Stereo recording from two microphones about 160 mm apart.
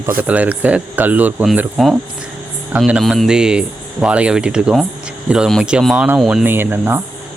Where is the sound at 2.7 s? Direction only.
5° right (ahead or behind).